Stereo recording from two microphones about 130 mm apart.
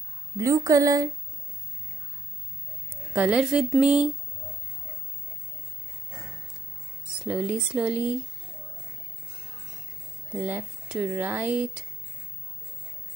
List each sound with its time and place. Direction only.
0.4 s a woman's voice: 25° right (ahead or behind)
2.9 s speech: 10° right (ahead or behind)
7.2 s speech: 10° right (ahead or behind)
10.3 s speech: 10° right (ahead or behind)